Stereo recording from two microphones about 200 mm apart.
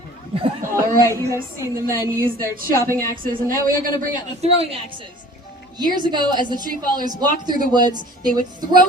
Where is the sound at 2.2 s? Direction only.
45° right (ahead or behind).